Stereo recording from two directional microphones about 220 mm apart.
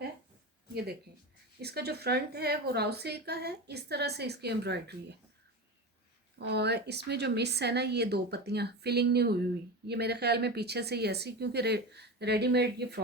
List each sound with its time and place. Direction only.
1.6 s a woman's voice: 45° right (ahead or behind)
6.4 s a woman's voice: 50° right (ahead or behind)